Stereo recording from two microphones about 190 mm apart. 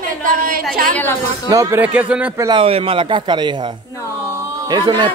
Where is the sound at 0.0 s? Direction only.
45° right (ahead or behind).